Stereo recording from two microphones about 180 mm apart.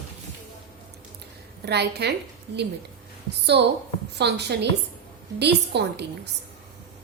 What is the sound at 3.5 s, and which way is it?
A woman's voice, 65° right (ahead or behind).